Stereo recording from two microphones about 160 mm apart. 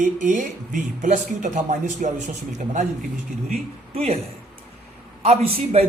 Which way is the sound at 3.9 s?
40° right (ahead or behind).